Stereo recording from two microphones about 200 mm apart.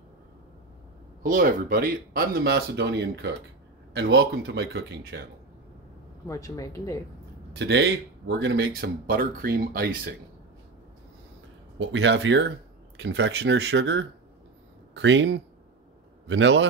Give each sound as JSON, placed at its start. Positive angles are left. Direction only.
{"t": 1.2, "sound": "speech", "side_deg": -45}
{"t": 6.2, "sound": "speech", "side_deg": 15}
{"t": 7.5, "sound": "speech", "side_deg": -60}
{"t": 11.8, "sound": "speech", "side_deg": -65}